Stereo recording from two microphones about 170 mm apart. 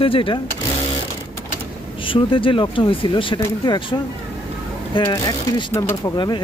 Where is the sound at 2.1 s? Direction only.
30° left (ahead or behind).